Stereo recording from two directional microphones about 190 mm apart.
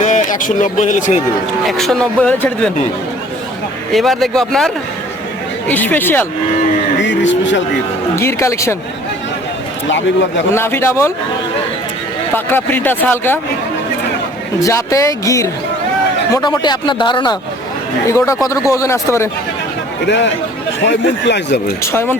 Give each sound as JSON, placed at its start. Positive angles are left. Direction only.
{"t": 0.0, "sound": "speech", "side_deg": 40}
{"t": 1.6, "sound": "speech", "side_deg": 0}
{"t": 3.9, "sound": "speech", "side_deg": 0}
{"t": 7.0, "sound": "speech", "side_deg": 75}
{"t": 8.1, "sound": "speech", "side_deg": 15}
{"t": 10.5, "sound": "speech", "side_deg": 15}
{"t": 12.3, "sound": "speech", "side_deg": 10}
{"t": 14.6, "sound": "speech", "side_deg": 15}
{"t": 18.4, "sound": "speech", "side_deg": 15}
{"t": 20.1, "sound": "speech", "side_deg": 65}
{"t": 21.9, "sound": "speech", "side_deg": 10}